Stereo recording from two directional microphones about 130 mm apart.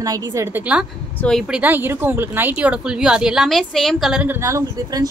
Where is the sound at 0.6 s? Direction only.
10° right (ahead or behind).